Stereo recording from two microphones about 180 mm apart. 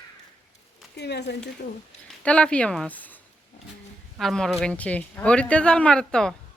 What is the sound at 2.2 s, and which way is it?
Speech, 5° left (ahead or behind).